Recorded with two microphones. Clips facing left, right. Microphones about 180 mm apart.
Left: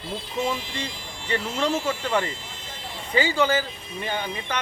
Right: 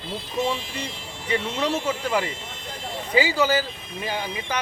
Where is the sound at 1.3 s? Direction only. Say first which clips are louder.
Even; 5° right (ahead or behind).